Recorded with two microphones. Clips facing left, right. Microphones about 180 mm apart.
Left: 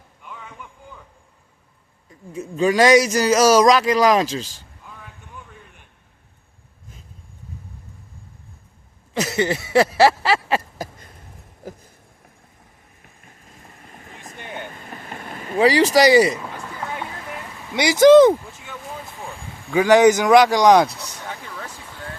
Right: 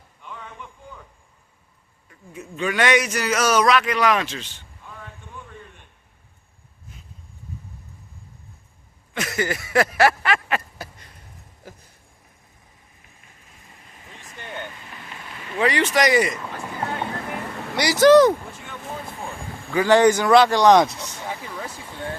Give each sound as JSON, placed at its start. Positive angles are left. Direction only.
{"t": 0.2, "sound": "boat", "side_deg": 10}
{"t": 2.6, "sound": "speech", "side_deg": 35}
{"t": 9.3, "sound": "a sound", "side_deg": 25}
{"t": 14.5, "sound": "boat", "side_deg": 45}
{"t": 18.0, "sound": "speech", "side_deg": 20}
{"t": 19.7, "sound": "speech", "side_deg": 15}
{"t": 21.2, "sound": "vehicle", "side_deg": -10}